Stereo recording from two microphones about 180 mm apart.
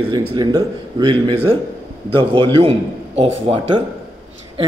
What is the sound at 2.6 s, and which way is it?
A man's voice, 30° right (ahead or behind).